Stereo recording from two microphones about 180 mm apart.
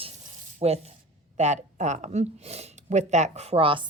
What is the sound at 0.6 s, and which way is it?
Speech, 35° right (ahead or behind).